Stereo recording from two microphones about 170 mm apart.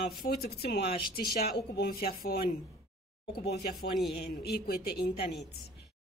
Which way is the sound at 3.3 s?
70° left (ahead or behind).